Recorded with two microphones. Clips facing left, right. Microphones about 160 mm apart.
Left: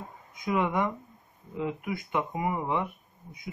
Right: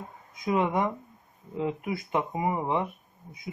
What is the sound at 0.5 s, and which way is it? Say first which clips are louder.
Speech: right 1 dB; 25° right (ahead or behind).